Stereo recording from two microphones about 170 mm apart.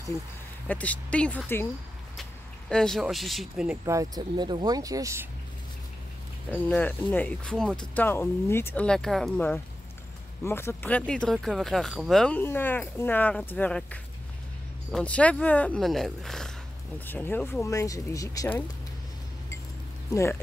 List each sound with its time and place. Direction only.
0.7 s speech: 10° left (ahead or behind)
2.7 s speech: 5° left (ahead or behind)
3.8 s speech: 20° right (ahead or behind)
6.5 s speech: 10° left (ahead or behind)
20.1 s speech: 15° left (ahead or behind)